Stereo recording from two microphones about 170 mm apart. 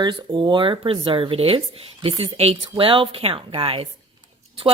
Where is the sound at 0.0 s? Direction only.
25° right (ahead or behind).